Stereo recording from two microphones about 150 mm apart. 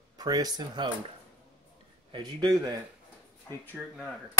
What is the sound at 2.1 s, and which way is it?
Speech, 30° right (ahead or behind).